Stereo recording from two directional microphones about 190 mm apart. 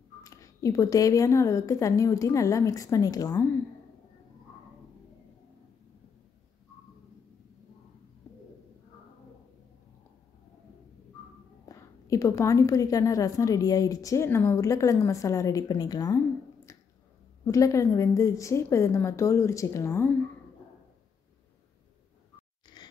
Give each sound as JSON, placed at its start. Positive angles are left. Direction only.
{"t": 0.2, "sound": "a woman's voice", "side_deg": 15}
{"t": 11.7, "sound": "a woman's voice", "side_deg": 15}
{"t": 17.5, "sound": "a woman's voice", "side_deg": 15}
{"t": 22.8, "sound": "dog", "side_deg": 20}